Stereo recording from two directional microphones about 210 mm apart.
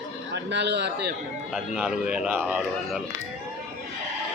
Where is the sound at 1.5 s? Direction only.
5° right (ahead or behind).